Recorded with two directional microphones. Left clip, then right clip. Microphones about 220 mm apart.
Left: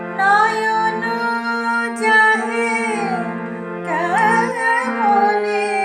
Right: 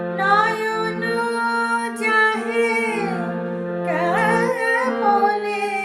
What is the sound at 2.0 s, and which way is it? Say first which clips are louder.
Music: left 5 dB; centre (ahead or behind).